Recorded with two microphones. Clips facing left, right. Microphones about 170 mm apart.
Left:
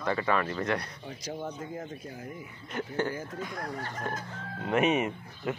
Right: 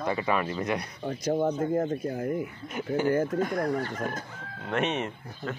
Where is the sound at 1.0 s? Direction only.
50° right (ahead or behind).